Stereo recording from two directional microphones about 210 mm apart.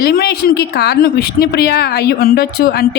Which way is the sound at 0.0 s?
50° left (ahead or behind).